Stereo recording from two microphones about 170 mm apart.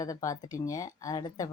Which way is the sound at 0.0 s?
20° left (ahead or behind).